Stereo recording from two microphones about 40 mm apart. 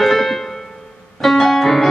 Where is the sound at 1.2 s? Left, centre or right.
Centre.